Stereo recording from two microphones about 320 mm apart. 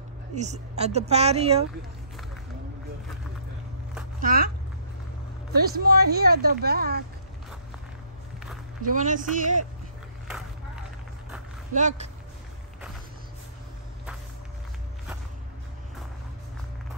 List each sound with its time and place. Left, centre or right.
0.3 s speech: right
4.2 s speech: right
5.5 s speech: right
8.8 s speech: right
11.7 s speech: right